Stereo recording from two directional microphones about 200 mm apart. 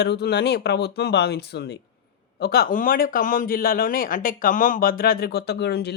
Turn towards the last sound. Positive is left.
turn(degrees=55)  # may be behind; listen again after turning